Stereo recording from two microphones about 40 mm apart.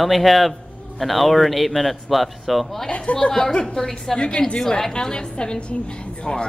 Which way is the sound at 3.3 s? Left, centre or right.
Centre.